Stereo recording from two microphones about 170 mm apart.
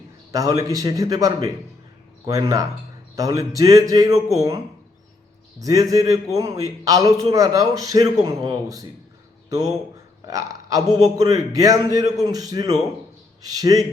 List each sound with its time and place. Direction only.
0.3 s a man's voice: 20° right (ahead or behind)